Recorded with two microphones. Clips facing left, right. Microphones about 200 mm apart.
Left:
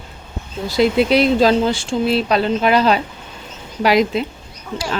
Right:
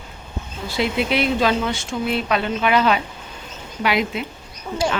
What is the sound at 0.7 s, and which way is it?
Speech, 40° left (ahead or behind).